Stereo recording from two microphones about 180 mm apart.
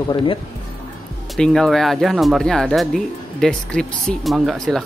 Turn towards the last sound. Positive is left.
turn(degrees=0)  # may be behind; listen again after turning